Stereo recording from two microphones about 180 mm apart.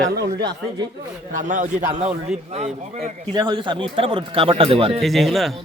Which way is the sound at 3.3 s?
25° right (ahead or behind).